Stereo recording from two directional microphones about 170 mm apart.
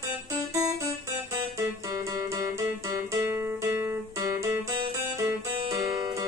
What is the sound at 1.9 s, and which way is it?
Music, 20° right (ahead or behind).